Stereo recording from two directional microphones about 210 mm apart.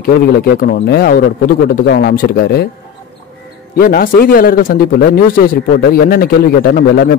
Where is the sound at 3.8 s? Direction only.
45° left (ahead or behind).